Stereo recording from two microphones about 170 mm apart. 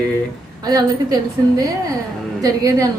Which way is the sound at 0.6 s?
25° right (ahead or behind).